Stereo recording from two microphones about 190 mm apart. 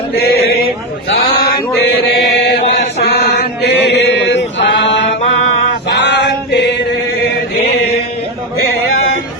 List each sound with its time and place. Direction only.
0.2 s a sound: 55° left (ahead or behind)
2.1 s chant: 60° left (ahead or behind)
4.6 s male singing: 70° left (ahead or behind)